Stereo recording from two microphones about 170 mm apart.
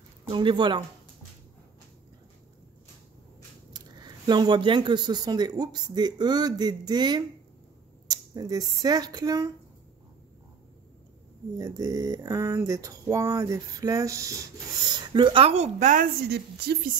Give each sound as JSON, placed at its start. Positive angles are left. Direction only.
{"t": 0.3, "sound": "speech", "side_deg": -30}
{"t": 3.7, "sound": "speech", "side_deg": -25}
{"t": 11.5, "sound": "speech", "side_deg": -20}
{"t": 16.3, "sound": "speech", "side_deg": -70}